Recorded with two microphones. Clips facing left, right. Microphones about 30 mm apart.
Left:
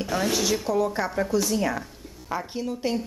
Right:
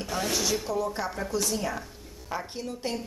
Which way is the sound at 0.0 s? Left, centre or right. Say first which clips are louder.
Left 4 dB; centre.